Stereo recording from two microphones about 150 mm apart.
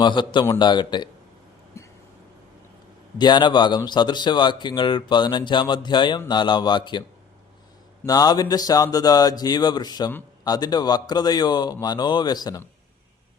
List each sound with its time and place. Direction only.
0.0 s a man's voice: 30° left (ahead or behind)
1.7 s a sound: 20° left (ahead or behind)
3.2 s speech: 30° left (ahead or behind)
8.0 s speech: 25° left (ahead or behind)